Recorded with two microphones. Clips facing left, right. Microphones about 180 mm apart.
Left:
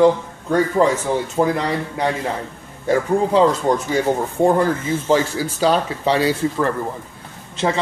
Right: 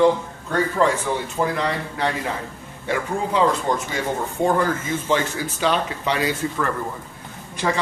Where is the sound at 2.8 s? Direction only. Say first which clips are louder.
Left 7 dB; 40° left (ahead or behind).